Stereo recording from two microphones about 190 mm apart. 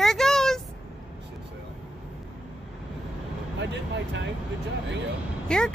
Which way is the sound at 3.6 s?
70° right (ahead or behind).